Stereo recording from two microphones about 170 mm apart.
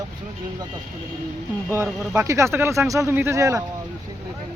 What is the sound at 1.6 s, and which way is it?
Speech, 15° right (ahead or behind).